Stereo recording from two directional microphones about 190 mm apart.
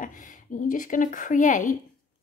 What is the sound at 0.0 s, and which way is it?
A woman's voice, 45° left (ahead or behind).